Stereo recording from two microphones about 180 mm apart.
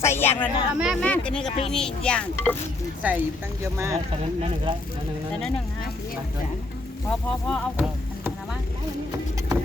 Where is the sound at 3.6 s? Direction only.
15° right (ahead or behind).